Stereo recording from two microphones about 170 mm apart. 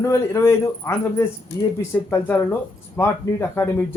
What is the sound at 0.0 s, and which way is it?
Speech, 15° left (ahead or behind).